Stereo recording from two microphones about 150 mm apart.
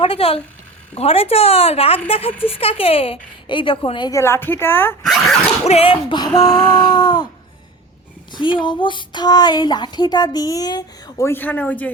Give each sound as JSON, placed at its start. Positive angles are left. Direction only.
{"t": 0.0, "sound": "speech", "side_deg": 40}
{"t": 4.2, "sound": "a woman's voice", "side_deg": 15}
{"t": 5.0, "sound": "dog", "side_deg": 0}
{"t": 5.6, "sound": "a woman's voice", "side_deg": 40}
{"t": 8.3, "sound": "a woman's voice", "side_deg": 30}